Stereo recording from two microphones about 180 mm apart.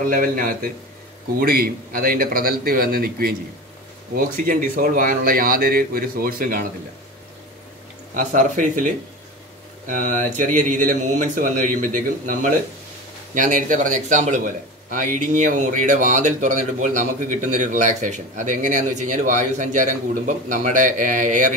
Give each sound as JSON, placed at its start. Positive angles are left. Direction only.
{"t": 0.0, "sound": "a man's voice", "side_deg": -50}
{"t": 8.2, "sound": "a man's voice", "side_deg": -45}
{"t": 9.8, "sound": "a man's voice", "side_deg": -45}